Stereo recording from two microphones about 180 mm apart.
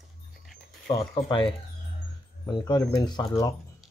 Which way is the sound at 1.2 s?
30° left (ahead or behind).